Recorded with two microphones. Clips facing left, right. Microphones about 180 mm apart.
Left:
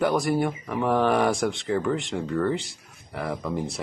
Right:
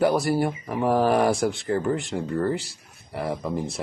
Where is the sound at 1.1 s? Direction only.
Centre (ahead or behind).